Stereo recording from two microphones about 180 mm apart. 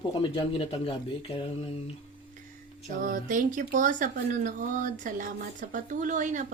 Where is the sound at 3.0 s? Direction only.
45° right (ahead or behind).